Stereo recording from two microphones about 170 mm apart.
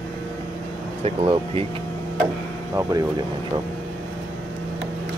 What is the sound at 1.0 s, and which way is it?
Speech, 35° right (ahead or behind).